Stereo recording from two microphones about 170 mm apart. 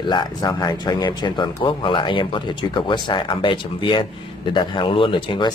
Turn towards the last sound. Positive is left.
turn(degrees=30)  # may be behind; listen again after turning